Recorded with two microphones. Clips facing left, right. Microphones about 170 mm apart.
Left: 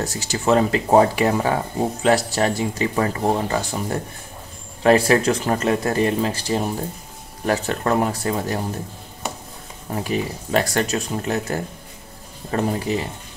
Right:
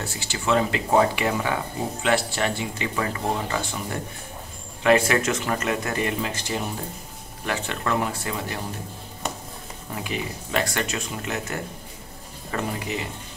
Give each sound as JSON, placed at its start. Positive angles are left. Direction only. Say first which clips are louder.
{"t": 0.0, "sound": "speech", "louder": "left 6 dB", "side_deg": 40}
{"t": 9.9, "sound": "speech", "louder": "left 7 dB", "side_deg": 40}